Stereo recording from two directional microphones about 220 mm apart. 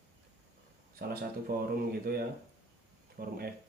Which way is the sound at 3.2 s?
45° right (ahead or behind).